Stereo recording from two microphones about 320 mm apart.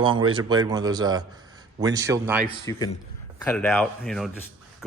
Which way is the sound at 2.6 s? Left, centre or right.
Centre.